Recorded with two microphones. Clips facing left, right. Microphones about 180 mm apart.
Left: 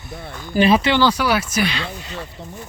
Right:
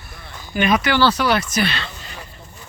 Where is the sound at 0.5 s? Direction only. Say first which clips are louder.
Left 3 dB; 30° left (ahead or behind).